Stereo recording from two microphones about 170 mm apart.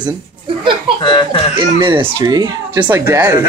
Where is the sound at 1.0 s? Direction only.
25° left (ahead or behind).